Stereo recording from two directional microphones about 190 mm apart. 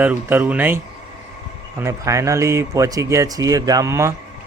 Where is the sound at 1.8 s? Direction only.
15° right (ahead or behind).